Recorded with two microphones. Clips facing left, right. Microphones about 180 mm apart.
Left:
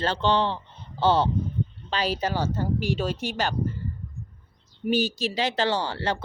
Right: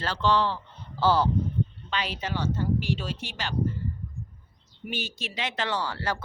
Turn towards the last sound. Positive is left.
turn(degrees=25)  # may be behind; listen again after turning